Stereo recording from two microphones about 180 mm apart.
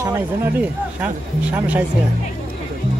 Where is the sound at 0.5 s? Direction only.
10° right (ahead or behind).